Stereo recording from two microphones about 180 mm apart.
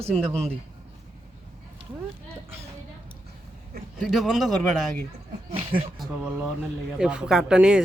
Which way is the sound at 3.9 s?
Centre (ahead or behind).